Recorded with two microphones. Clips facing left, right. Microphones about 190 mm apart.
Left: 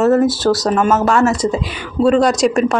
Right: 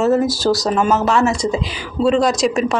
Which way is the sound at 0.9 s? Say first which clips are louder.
Left 2 dB; centre (ahead or behind).